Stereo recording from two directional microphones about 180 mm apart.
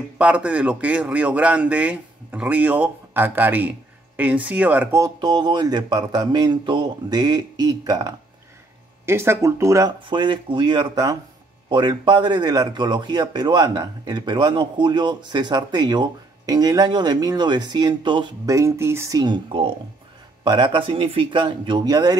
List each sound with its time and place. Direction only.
0.2 s a man's voice: 5° right (ahead or behind)